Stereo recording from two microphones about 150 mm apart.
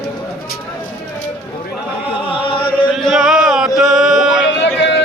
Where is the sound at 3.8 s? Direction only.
5° right (ahead or behind).